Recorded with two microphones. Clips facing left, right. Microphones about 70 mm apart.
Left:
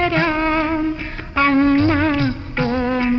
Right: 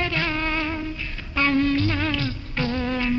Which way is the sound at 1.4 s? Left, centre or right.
Left.